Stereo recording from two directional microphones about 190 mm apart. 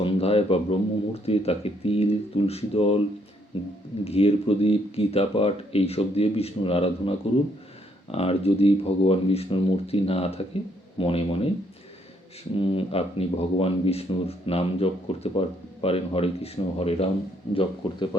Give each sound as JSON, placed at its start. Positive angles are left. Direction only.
{"t": 0.0, "sound": "speech", "side_deg": 30}
{"t": 8.1, "sound": "speech", "side_deg": 30}
{"t": 12.5, "sound": "speech", "side_deg": 30}